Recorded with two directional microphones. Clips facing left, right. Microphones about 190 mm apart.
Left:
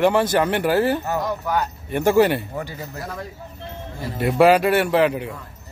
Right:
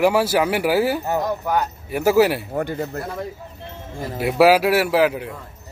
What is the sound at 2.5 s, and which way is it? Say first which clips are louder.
Speech: right 6 dB; 55° right (ahead or behind).